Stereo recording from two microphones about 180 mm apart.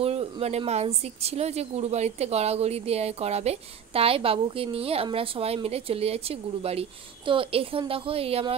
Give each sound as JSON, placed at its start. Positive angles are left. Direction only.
{"t": 0.0, "sound": "a woman's voice", "side_deg": -35}